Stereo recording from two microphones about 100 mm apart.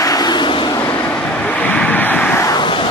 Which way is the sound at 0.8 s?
20° left (ahead or behind).